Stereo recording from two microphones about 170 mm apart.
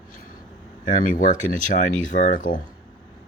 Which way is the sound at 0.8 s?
50° left (ahead or behind).